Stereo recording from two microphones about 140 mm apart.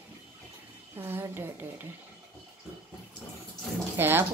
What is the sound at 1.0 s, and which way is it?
Speech, 15° right (ahead or behind).